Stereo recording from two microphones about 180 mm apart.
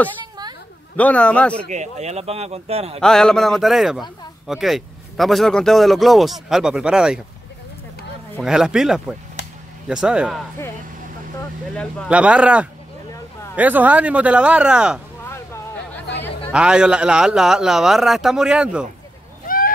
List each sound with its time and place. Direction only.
0.9 s a man's voice: 5° left (ahead or behind)
1.7 s speech: 40° right (ahead or behind)
3.0 s speech: centre (ahead or behind)
8.4 s speech: 5° right (ahead or behind)
9.4 s a sound: 70° left (ahead or behind)
9.8 s speech: 5° right (ahead or behind)
11.7 s a man's voice: 5° left (ahead or behind)
12.1 s speech: 5° right (ahead or behind)
15.2 s a sound: 15° left (ahead or behind)
16.5 s speech: 5° right (ahead or behind)
19.4 s a sound: 50° left (ahead or behind)